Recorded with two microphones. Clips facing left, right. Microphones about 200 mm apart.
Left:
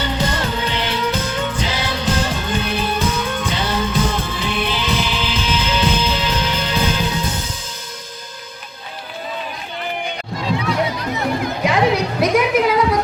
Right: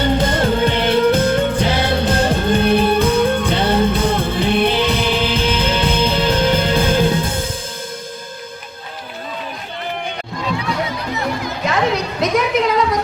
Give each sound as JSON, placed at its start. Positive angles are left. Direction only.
{"t": 0.0, "sound": "music", "side_deg": -55}
{"t": 11.6, "sound": "music", "side_deg": 10}